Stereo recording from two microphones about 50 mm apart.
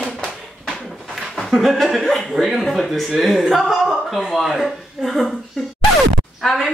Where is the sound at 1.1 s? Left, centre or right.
Centre.